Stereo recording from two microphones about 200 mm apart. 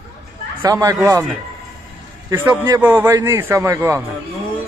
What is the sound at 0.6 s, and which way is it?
Speech, 15° right (ahead or behind).